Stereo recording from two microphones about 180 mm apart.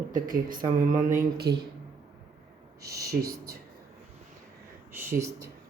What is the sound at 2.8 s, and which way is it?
Speech, 20° right (ahead or behind).